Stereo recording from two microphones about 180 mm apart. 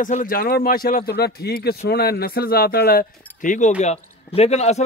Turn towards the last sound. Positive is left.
turn(degrees=35)  # may be behind; listen again after turning